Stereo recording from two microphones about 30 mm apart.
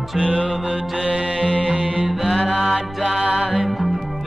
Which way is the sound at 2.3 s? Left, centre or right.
Centre.